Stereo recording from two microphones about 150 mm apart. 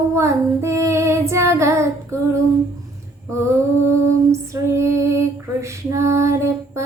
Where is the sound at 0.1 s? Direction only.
20° right (ahead or behind).